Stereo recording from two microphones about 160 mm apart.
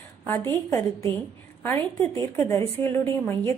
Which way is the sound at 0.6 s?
20° left (ahead or behind).